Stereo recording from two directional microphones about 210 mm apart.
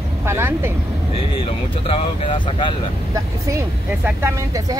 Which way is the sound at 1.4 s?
30° left (ahead or behind).